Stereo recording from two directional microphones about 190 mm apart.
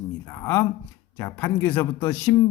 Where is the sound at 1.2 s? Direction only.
10° left (ahead or behind).